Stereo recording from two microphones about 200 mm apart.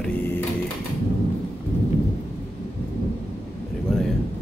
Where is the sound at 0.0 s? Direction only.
10° left (ahead or behind).